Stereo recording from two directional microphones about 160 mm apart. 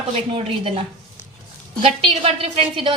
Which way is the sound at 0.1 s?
35° right (ahead or behind).